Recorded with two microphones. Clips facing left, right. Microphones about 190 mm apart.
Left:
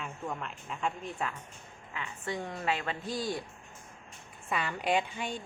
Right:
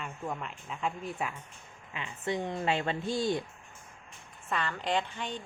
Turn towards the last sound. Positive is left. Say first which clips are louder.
# left 1 dB
turn(degrees=10)  # may be behind; listen again after turning